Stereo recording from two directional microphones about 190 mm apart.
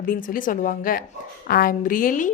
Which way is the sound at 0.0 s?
45° left (ahead or behind).